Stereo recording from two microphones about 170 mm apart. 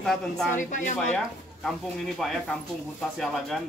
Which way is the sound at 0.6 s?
50° left (ahead or behind).